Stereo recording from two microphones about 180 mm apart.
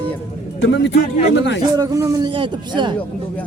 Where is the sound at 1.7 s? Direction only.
20° right (ahead or behind).